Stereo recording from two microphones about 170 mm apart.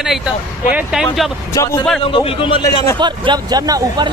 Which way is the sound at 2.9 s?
25° right (ahead or behind).